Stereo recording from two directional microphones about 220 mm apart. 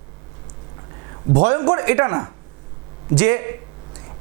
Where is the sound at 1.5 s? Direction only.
20° right (ahead or behind).